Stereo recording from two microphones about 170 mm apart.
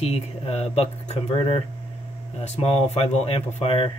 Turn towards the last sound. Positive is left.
turn(degrees=35)  # may be behind; listen again after turning